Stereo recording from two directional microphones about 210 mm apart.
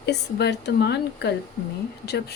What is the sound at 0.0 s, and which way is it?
A woman's voice, 50° left (ahead or behind).